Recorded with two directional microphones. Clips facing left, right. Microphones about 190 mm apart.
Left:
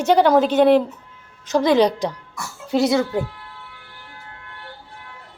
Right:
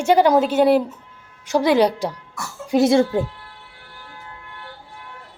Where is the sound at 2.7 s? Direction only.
25° right (ahead or behind).